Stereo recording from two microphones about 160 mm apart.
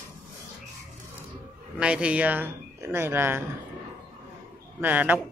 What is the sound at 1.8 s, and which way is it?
Speech, 5° right (ahead or behind).